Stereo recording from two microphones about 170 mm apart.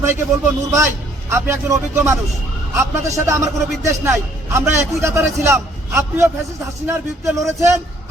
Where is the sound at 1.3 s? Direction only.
15° right (ahead or behind).